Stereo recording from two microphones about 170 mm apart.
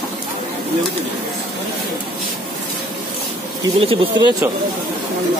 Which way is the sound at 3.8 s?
30° right (ahead or behind).